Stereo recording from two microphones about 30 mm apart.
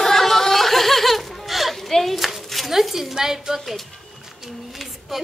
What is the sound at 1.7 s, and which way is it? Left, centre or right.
Clapping, centre.